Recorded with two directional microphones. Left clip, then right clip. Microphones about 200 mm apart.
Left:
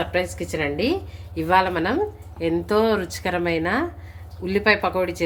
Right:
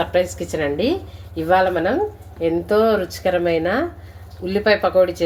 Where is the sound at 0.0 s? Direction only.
Centre (ahead or behind).